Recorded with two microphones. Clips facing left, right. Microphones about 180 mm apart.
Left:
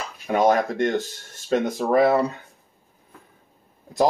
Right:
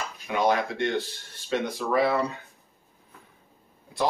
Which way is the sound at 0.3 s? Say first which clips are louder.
Left 5 dB; 45° left (ahead or behind).